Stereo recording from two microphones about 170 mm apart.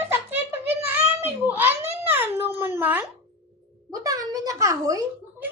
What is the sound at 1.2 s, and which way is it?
A child's voice, 10° right (ahead or behind).